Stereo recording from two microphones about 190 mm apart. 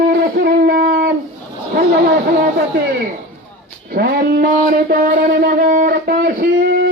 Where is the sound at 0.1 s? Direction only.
55° right (ahead or behind).